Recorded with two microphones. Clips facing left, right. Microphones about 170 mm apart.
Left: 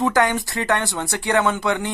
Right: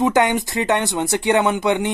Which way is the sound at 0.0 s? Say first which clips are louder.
Right 2 dB; 20° right (ahead or behind).